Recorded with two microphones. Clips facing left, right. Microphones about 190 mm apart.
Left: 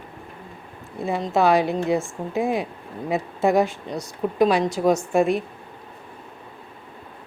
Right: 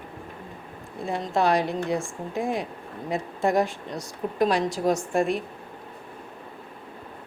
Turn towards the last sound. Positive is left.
turn(degrees=0)  # may be behind; listen again after turning